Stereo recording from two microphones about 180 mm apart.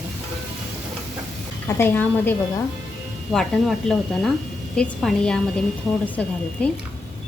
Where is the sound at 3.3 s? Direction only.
Centre (ahead or behind).